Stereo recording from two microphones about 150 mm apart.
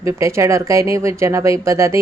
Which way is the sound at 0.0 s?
20° right (ahead or behind).